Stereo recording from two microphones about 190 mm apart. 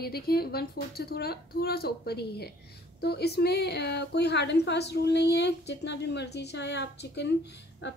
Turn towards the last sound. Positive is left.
turn(degrees=65)  # may be behind; listen again after turning